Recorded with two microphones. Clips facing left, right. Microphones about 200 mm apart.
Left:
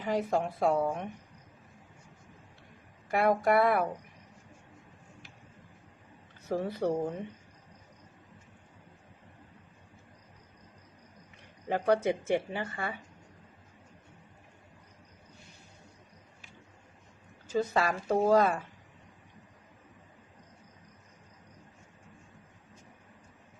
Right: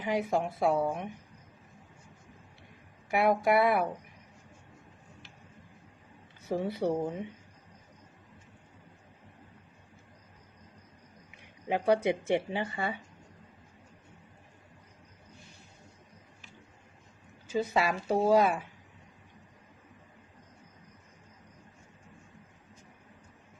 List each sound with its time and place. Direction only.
0.0 s a woman's voice: 5° right (ahead or behind)
3.1 s a woman's voice: 5° right (ahead or behind)
6.5 s speech: 10° right (ahead or behind)
11.3 s speech: 15° right (ahead or behind)
17.5 s speech: 10° right (ahead or behind)